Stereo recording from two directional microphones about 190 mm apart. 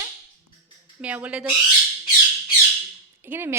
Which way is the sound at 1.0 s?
10° right (ahead or behind).